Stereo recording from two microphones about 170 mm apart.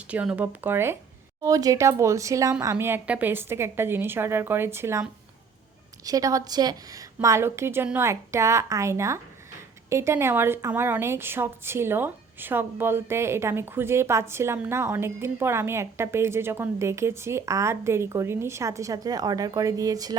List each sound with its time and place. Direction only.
0.1 s a woman's voice: 10° right (ahead or behind)
6.1 s a woman's voice: 20° right (ahead or behind)